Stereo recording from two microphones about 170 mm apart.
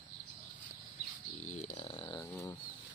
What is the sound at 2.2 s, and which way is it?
Speech, 15° left (ahead or behind).